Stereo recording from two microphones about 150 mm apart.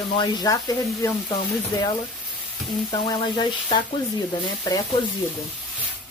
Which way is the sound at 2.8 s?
30° left (ahead or behind).